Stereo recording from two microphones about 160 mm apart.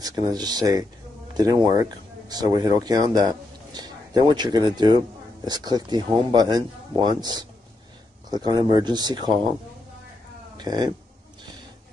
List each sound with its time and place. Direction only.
0.0 s speech: 25° right (ahead or behind)
10.6 s speech: 25° right (ahead or behind)